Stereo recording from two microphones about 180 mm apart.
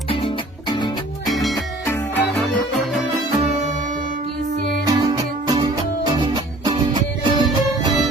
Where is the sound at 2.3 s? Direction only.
Centre (ahead or behind).